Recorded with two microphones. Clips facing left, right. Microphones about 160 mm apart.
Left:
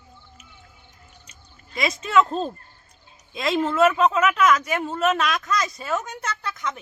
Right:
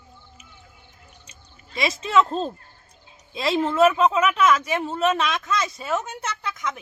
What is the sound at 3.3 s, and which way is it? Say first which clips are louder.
Speech: even; 30° right (ahead or behind).